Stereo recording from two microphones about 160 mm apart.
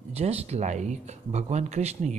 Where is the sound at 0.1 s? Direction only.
40° right (ahead or behind).